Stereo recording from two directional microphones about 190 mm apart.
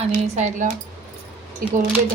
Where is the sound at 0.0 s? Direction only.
40° right (ahead or behind).